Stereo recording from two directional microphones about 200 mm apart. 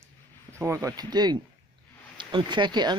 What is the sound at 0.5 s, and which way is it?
Speech, 15° right (ahead or behind).